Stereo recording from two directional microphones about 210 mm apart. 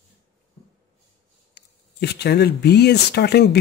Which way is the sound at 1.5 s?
50° left (ahead or behind).